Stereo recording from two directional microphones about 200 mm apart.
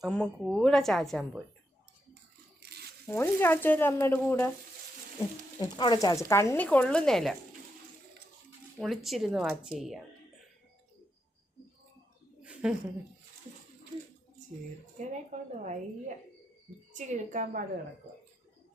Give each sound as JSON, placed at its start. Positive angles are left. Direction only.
{"t": 0.0, "sound": "a woman's voice", "side_deg": 0}
{"t": 2.6, "sound": "zipper", "side_deg": -55}
{"t": 3.1, "sound": "speech", "side_deg": 10}
{"t": 5.5, "sound": "speech", "side_deg": 20}
{"t": 8.8, "sound": "a woman's voice", "side_deg": 0}
{"t": 12.4, "sound": "a sound", "side_deg": -5}
{"t": 14.9, "sound": "a woman's voice", "side_deg": -35}